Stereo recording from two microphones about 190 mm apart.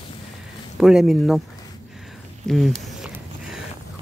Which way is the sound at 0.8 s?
5° right (ahead or behind).